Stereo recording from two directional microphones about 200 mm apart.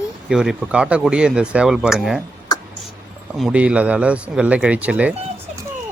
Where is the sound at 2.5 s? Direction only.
20° left (ahead or behind).